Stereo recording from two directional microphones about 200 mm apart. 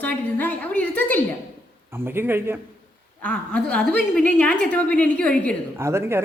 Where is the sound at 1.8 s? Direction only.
10° right (ahead or behind).